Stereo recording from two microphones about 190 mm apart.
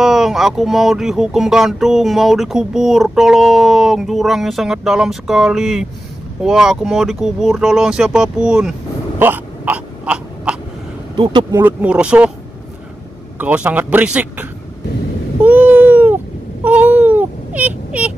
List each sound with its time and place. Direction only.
0.0 s speech: centre (ahead or behind)
9.2 s throat clearing: 10° right (ahead or behind)
11.1 s speech: 25° right (ahead or behind)
11.6 s speech: 5° right (ahead or behind)
13.4 s speech: 10° right (ahead or behind)
15.4 s a sound: 10° right (ahead or behind)